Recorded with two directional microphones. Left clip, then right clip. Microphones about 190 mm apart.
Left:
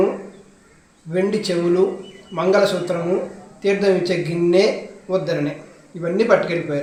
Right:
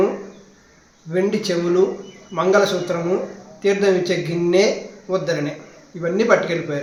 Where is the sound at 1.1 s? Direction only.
5° right (ahead or behind).